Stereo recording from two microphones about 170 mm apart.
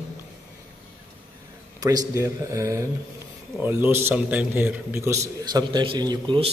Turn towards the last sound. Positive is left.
turn(degrees=-30)  # may be behind; listen again after turning